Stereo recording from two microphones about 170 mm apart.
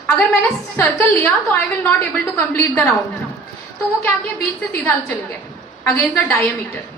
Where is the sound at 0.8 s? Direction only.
10° left (ahead or behind).